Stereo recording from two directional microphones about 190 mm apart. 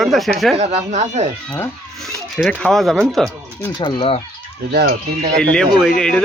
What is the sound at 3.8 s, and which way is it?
Speech, 25° left (ahead or behind).